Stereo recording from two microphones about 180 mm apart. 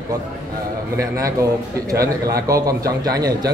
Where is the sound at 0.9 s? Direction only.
20° right (ahead or behind).